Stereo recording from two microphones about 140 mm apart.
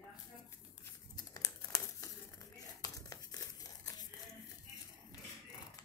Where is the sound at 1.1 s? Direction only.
25° left (ahead or behind).